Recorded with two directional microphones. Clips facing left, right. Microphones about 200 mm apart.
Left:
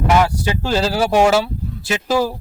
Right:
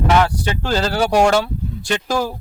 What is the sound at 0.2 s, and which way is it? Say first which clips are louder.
A man's voice: left 1 dB; 10° left (ahead or behind).